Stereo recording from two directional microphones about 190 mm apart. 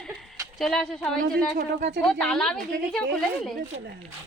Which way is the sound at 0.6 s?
5° left (ahead or behind).